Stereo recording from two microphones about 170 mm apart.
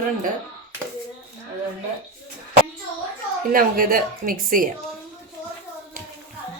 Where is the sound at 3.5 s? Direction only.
55° right (ahead or behind).